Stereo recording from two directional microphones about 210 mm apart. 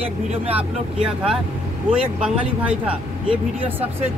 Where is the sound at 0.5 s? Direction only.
5° right (ahead or behind).